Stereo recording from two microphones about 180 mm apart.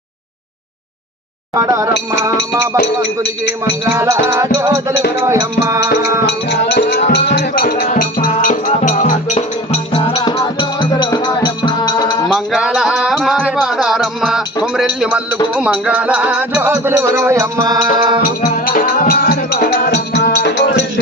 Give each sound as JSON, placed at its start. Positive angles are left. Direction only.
{"t": 1.5, "sound": "music", "side_deg": -15}
{"t": 3.9, "sound": "music", "side_deg": -15}
{"t": 6.2, "sound": "music", "side_deg": 70}
{"t": 7.3, "sound": "speech", "side_deg": 60}
{"t": 7.9, "sound": "music", "side_deg": 50}
{"t": 12.3, "sound": "music", "side_deg": 0}
{"t": 18.2, "sound": "music", "side_deg": 55}